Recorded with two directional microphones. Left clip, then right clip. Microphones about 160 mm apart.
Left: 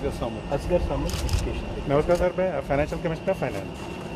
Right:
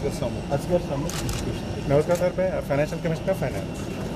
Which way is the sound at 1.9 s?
Centre (ahead or behind).